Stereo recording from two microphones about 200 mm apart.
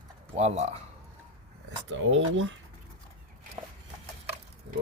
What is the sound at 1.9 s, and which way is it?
Speech, 70° right (ahead or behind).